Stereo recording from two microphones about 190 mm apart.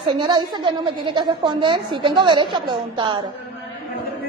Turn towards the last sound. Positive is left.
turn(degrees=-25)  # may be behind; listen again after turning